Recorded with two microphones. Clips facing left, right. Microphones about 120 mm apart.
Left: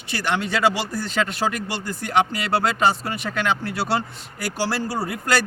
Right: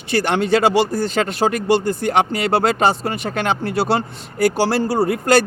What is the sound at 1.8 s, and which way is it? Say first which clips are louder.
Speech: right 4 dB; 60° right (ahead or behind).